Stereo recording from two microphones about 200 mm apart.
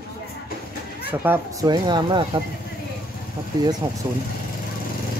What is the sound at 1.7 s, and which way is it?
Speech, 20° right (ahead or behind).